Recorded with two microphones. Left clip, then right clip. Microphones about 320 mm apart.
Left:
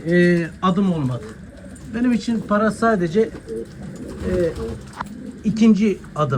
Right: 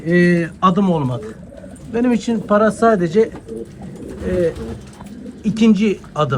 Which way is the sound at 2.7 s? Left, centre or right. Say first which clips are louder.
Right 4 dB; right.